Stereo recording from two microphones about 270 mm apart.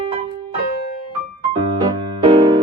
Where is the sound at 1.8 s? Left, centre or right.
Centre.